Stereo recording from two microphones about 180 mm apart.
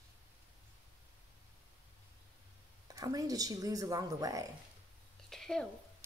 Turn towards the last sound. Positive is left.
turn(degrees=5)  # may be behind; listen again after turning